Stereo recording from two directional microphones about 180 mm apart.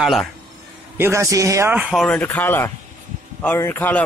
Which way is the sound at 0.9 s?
15° right (ahead or behind).